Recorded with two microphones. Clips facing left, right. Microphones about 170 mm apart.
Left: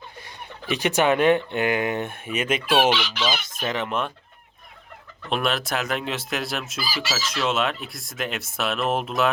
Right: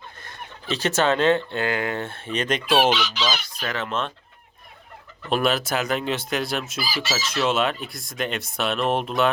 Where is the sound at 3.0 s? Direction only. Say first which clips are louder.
Right 1 dB; 55° left (ahead or behind).